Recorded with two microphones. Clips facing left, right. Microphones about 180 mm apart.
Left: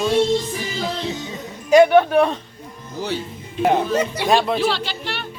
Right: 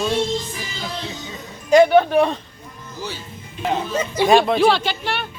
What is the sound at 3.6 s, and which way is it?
Speech, 65° left (ahead or behind).